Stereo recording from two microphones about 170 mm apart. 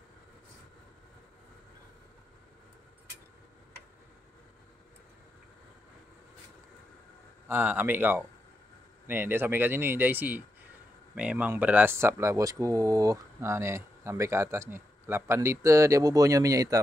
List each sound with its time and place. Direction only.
7.4 s speech: 10° right (ahead or behind)